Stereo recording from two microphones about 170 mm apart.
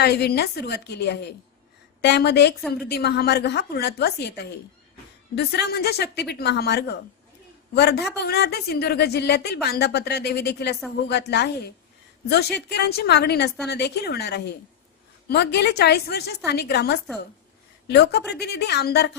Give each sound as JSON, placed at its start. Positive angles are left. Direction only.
{"t": 0.0, "sound": "a woman's voice", "side_deg": 75}
{"t": 2.7, "sound": "a woman's voice", "side_deg": 70}